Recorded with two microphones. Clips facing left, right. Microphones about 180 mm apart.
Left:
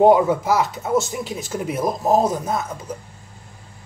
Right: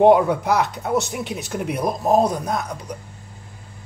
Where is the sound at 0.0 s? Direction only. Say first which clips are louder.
Even; centre (ahead or behind).